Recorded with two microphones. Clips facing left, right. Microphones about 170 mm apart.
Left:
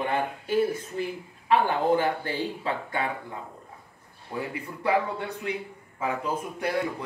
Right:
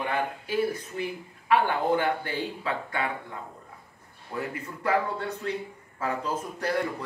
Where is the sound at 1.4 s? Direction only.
30° left (ahead or behind).